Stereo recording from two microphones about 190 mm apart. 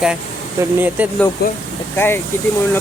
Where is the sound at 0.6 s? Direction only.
15° right (ahead or behind).